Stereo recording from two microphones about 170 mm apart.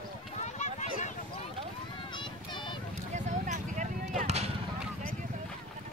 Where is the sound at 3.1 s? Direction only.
45° right (ahead or behind).